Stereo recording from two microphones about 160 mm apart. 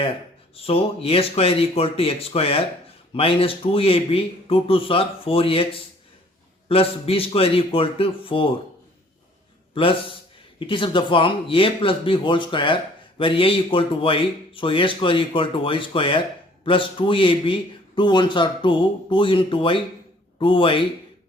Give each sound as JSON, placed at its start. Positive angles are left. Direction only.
{"t": 0.5, "sound": "speech", "side_deg": 35}
{"t": 9.7, "sound": "speech", "side_deg": 35}